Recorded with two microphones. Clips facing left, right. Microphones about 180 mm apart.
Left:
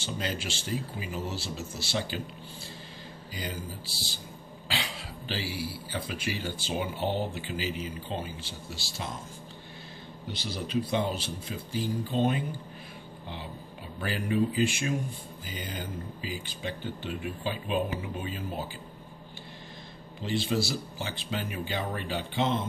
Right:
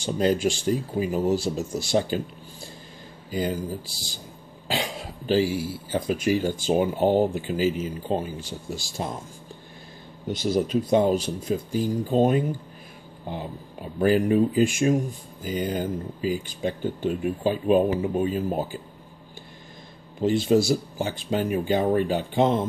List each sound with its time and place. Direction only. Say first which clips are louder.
0.0 s speech: right 12 dB; 45° right (ahead or behind)
1.6 s speech: right 10 dB; 15° right (ahead or behind)
1.9 s speech: right 9 dB; 45° right (ahead or behind)
4.6 s speech: right 7 dB; 45° right (ahead or behind)
10.2 s speech: right 13 dB; 45° right (ahead or behind)
13.9 s speech: right 9 dB; 45° right (ahead or behind)
20.2 s speech: right 9 dB; 45° right (ahead or behind)